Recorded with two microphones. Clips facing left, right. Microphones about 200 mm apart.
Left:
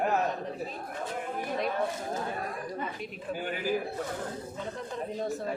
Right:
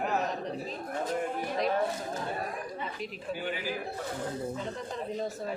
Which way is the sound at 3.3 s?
45° left (ahead or behind).